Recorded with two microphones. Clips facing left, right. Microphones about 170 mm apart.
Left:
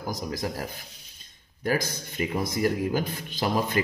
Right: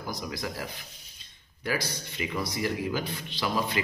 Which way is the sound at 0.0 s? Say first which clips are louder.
Left 4 dB; 40° left (ahead or behind).